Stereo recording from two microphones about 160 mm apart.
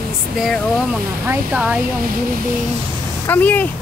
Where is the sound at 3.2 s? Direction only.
10° left (ahead or behind).